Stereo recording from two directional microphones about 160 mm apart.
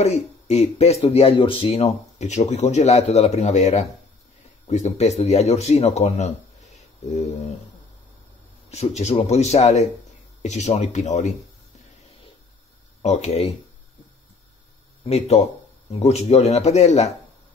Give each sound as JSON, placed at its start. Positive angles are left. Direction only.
{"t": 0.0, "sound": "speech", "side_deg": 40}
{"t": 8.6, "sound": "speech", "side_deg": 40}
{"t": 13.0, "sound": "speech", "side_deg": 45}
{"t": 15.0, "sound": "speech", "side_deg": 40}